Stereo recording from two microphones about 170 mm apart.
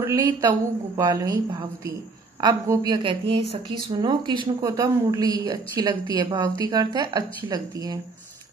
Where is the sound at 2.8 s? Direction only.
25° right (ahead or behind).